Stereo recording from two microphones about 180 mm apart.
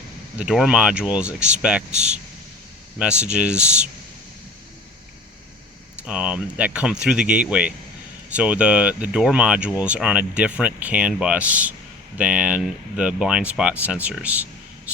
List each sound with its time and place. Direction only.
0.3 s speech: 5° right (ahead or behind)
1.9 s speech: 40° right (ahead or behind)
3.2 s speech: 5° right (ahead or behind)
6.1 s speech: 5° right (ahead or behind)